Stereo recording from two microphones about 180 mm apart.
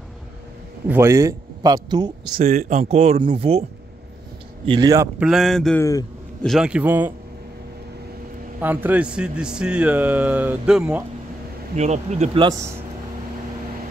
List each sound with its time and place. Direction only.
0.8 s speech: 15° right (ahead or behind)
2.3 s speech: 40° right (ahead or behind)
4.6 s speech: 20° right (ahead or behind)
5.3 s speech: centre (ahead or behind)
5.8 s speech: 20° left (ahead or behind)
6.4 s speech: centre (ahead or behind)
8.5 s speech: 10° right (ahead or behind)
11.7 s speech: 40° right (ahead or behind)
12.4 s speech: 20° right (ahead or behind)